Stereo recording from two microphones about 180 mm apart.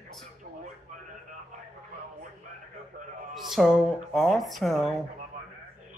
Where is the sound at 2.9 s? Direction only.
50° right (ahead or behind).